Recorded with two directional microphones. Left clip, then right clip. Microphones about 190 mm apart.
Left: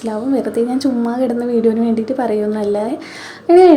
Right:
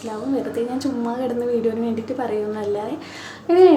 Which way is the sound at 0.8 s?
30° left (ahead or behind).